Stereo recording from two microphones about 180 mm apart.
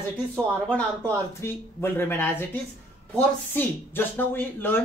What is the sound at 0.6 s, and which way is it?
A woman's voice, 10° left (ahead or behind).